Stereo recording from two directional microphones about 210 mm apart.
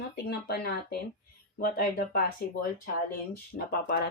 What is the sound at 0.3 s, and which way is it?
Speech, 50° left (ahead or behind).